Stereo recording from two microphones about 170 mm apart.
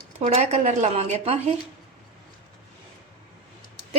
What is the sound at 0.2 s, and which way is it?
Speech, 40° right (ahead or behind).